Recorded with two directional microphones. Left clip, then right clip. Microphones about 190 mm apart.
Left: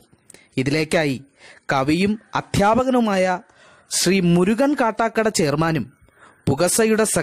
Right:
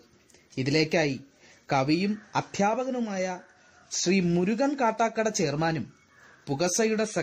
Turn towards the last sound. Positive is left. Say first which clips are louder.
# left 8 dB
turn(degrees=40)  # may be behind; listen again after turning